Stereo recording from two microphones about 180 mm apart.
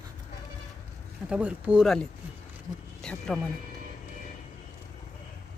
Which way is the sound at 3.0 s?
5° left (ahead or behind).